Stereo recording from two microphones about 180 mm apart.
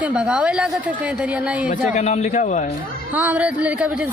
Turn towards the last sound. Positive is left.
turn(degrees=-10)  # may be behind; listen again after turning